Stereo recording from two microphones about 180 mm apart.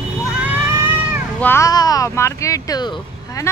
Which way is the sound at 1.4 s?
15° left (ahead or behind).